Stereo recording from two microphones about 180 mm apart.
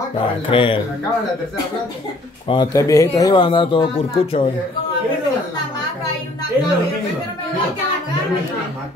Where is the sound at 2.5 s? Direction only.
20° left (ahead or behind).